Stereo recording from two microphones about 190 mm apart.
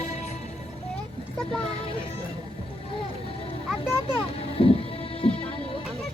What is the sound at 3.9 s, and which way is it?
Vehicle, 25° left (ahead or behind).